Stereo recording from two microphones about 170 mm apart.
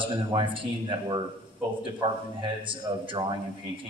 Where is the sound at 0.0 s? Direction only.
30° right (ahead or behind).